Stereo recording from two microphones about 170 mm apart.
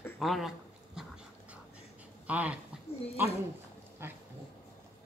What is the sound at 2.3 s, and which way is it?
Speech, 10° right (ahead or behind).